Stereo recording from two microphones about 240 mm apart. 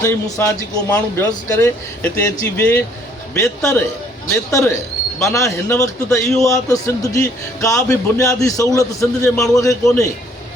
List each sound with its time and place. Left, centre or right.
0.0 s a man's voice: centre